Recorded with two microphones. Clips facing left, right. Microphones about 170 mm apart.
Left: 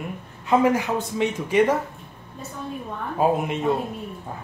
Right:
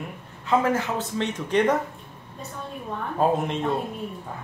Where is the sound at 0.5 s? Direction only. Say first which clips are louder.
Left 3 dB; 15° left (ahead or behind).